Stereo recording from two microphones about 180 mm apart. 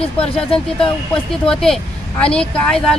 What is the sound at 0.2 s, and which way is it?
Speech, 30° left (ahead or behind).